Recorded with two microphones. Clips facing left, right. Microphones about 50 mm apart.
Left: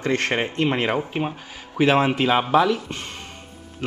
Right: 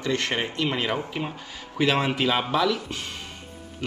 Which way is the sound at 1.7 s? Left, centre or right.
Left.